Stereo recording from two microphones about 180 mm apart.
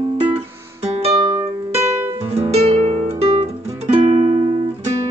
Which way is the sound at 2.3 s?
35° right (ahead or behind).